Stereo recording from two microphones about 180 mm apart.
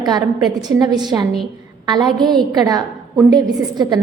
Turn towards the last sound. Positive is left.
turn(degrees=-20)  # may be behind; listen again after turning